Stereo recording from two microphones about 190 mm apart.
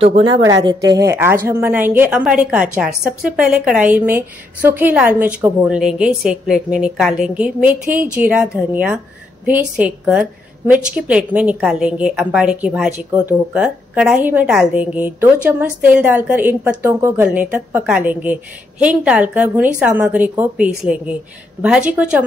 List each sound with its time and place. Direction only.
0.0 s a woman's voice: 30° right (ahead or behind)
0.6 s a woman's voice: 20° right (ahead or behind)